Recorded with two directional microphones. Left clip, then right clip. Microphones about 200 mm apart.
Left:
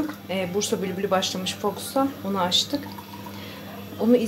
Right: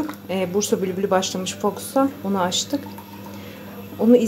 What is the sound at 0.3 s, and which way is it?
A woman's voice, 25° right (ahead or behind).